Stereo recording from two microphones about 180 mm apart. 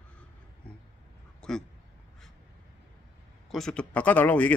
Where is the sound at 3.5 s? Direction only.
5° left (ahead or behind).